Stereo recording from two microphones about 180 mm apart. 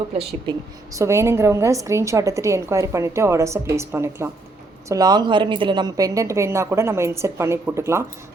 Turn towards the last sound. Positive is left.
turn(degrees=-15)  # may be behind; listen again after turning